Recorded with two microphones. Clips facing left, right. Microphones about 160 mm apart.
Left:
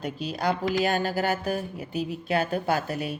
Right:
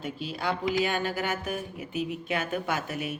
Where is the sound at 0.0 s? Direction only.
40° left (ahead or behind).